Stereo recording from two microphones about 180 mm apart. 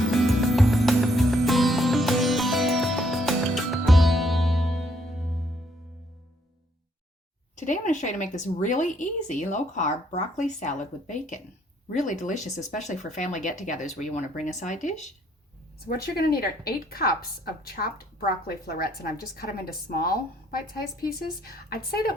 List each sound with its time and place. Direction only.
0.1 s music: centre (ahead or behind)
7.5 s a woman's voice: 45° left (ahead or behind)
15.9 s a woman's voice: 55° left (ahead or behind)